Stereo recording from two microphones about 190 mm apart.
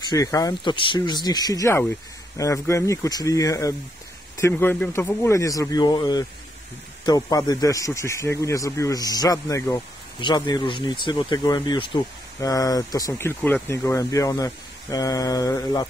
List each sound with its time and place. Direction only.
0.1 s speech: 20° left (ahead or behind)